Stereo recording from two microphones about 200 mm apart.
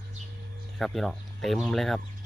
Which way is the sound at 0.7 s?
Centre (ahead or behind).